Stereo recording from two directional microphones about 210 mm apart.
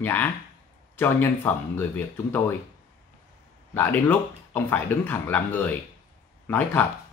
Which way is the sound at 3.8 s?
10° left (ahead or behind).